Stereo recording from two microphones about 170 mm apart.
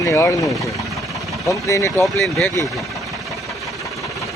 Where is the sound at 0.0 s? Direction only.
15° left (ahead or behind).